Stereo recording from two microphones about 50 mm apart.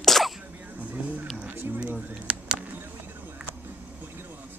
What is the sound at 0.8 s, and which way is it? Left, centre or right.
Vehicle, right.